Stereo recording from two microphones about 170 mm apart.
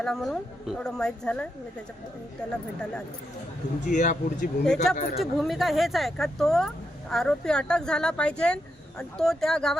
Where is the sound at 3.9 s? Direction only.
45° left (ahead or behind).